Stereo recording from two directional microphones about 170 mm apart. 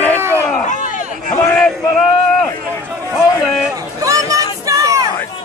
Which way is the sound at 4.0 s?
20° right (ahead or behind).